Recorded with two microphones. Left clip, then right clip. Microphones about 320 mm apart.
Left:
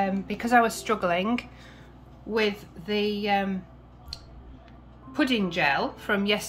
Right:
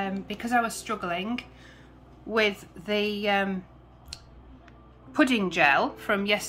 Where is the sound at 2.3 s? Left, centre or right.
Centre.